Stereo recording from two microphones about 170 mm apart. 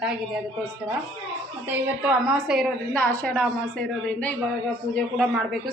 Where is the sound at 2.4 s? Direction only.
Centre (ahead or behind).